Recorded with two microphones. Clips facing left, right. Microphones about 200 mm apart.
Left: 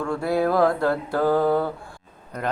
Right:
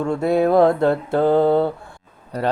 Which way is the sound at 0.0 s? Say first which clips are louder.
Right 5 dB; 25° right (ahead or behind).